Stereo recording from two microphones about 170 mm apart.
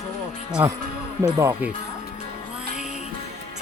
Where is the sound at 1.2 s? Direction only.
20° right (ahead or behind).